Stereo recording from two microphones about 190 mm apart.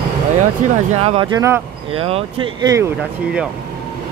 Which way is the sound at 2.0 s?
30° right (ahead or behind).